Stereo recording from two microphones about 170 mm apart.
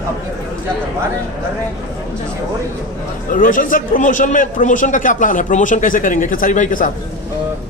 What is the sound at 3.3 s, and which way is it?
A man's voice, 55° left (ahead or behind).